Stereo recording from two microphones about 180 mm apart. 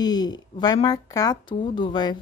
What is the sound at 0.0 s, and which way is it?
A woman's voice, 20° left (ahead or behind).